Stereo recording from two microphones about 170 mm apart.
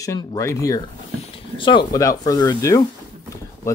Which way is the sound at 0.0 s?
20° left (ahead or behind).